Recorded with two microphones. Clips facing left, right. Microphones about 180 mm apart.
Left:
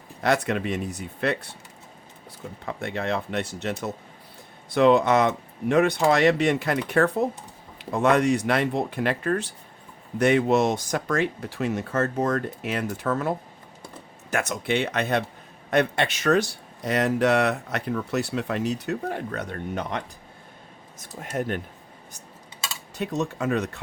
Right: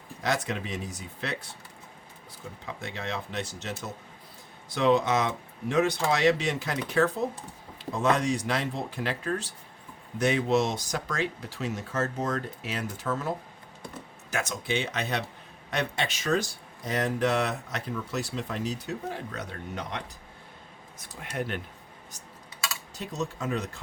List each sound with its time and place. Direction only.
0.2 s speech: 60° left (ahead or behind)
2.6 s speech: 60° left (ahead or behind)
21.0 s speech: 45° left (ahead or behind)
23.0 s speech: 65° left (ahead or behind)